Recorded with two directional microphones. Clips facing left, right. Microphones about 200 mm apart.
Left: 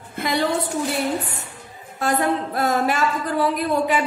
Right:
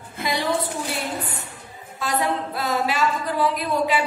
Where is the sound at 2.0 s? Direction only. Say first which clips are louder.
Left 3 dB; 50° left (ahead or behind).